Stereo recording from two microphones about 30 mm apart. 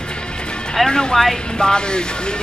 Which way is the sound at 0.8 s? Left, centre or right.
Left.